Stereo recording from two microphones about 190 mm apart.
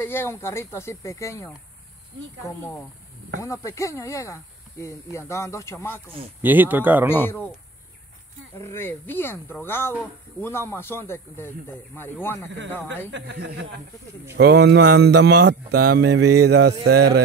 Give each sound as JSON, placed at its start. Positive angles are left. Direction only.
{"t": 0.0, "sound": "speech", "side_deg": 10}
{"t": 3.3, "sound": "speech", "side_deg": 15}
{"t": 6.4, "sound": "speech", "side_deg": -10}
{"t": 8.5, "sound": "speech", "side_deg": 10}
{"t": 13.1, "sound": "speech", "side_deg": -70}